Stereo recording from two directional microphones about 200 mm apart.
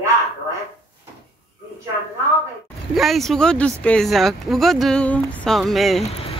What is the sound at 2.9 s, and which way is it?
Speech, centre (ahead or behind).